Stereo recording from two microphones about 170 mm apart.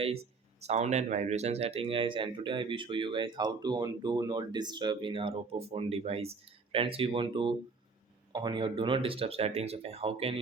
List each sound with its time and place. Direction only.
0.6 s speech: 40° right (ahead or behind)